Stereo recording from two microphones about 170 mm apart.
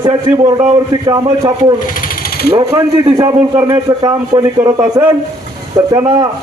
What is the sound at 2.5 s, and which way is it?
A man's voice, 20° right (ahead or behind).